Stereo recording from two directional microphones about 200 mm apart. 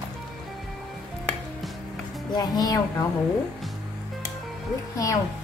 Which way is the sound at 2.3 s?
20° left (ahead or behind).